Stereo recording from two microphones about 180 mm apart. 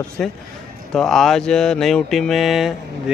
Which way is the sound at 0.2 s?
5° left (ahead or behind).